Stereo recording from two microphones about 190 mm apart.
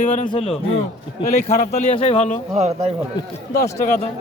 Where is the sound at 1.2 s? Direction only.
35° left (ahead or behind).